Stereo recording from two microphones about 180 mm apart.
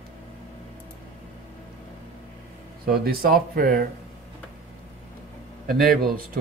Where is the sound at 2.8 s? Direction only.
60° right (ahead or behind).